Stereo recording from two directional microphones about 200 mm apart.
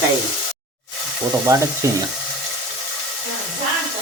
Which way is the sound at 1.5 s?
15° right (ahead or behind).